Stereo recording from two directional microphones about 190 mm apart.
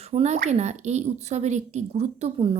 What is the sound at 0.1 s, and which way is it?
Speech, 35° right (ahead or behind).